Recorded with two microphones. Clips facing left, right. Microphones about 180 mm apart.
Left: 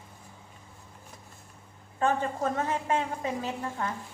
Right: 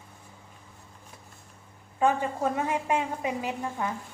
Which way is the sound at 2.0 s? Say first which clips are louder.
Right 2 dB; 10° right (ahead or behind).